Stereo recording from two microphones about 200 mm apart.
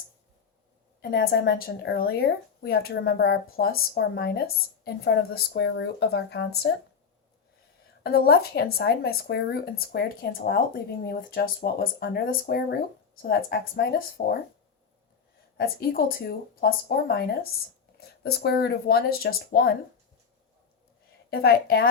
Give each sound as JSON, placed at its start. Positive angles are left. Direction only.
{"t": 1.1, "sound": "a woman's voice", "side_deg": 50}
{"t": 8.0, "sound": "a woman's voice", "side_deg": 50}
{"t": 15.5, "sound": "a woman's voice", "side_deg": 50}
{"t": 21.2, "sound": "a woman's voice", "side_deg": 50}